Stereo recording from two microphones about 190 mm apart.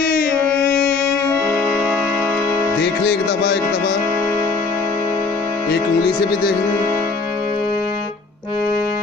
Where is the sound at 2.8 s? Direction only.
60° left (ahead or behind).